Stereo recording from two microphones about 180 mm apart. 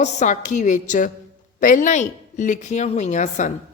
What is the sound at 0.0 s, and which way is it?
A woman's voice, 40° left (ahead or behind).